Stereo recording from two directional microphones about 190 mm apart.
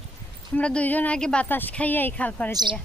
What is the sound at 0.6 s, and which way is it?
A woman's voice, 5° left (ahead or behind).